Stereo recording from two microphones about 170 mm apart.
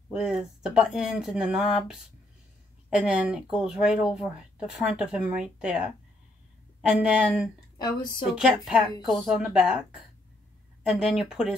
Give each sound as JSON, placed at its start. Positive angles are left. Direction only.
{"t": 0.1, "sound": "speech", "side_deg": -5}
{"t": 10.9, "sound": "speech", "side_deg": -5}